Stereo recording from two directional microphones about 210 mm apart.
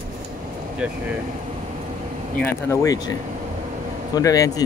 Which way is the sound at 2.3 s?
10° left (ahead or behind).